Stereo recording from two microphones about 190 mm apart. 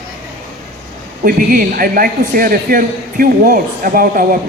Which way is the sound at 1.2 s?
50° right (ahead or behind).